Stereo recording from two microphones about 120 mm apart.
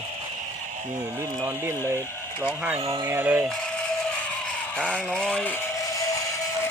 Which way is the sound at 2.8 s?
50° right (ahead or behind).